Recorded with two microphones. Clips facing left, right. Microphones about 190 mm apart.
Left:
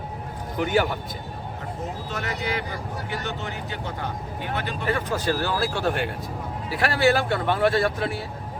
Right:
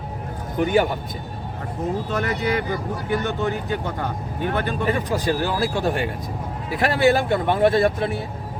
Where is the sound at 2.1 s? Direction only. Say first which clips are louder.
Right 4 dB; 45° right (ahead or behind).